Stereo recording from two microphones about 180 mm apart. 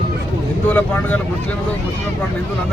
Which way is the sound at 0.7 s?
10° left (ahead or behind).